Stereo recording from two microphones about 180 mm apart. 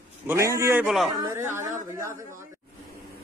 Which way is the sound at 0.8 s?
Centre (ahead or behind).